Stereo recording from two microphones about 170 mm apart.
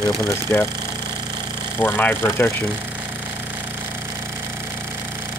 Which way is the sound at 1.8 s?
10° left (ahead or behind).